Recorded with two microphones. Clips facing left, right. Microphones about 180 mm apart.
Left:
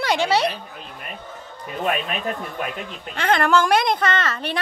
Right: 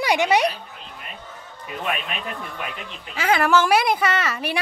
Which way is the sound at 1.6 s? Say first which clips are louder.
Left 4 dB; 40° left (ahead or behind).